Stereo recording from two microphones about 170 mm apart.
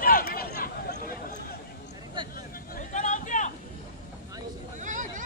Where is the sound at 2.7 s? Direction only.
45° left (ahead or behind).